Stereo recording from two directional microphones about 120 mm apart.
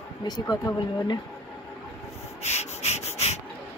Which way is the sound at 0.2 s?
35° left (ahead or behind).